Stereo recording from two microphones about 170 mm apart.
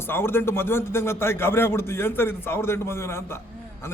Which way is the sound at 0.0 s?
15° left (ahead or behind).